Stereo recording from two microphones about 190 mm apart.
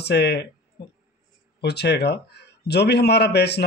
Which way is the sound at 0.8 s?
55° left (ahead or behind).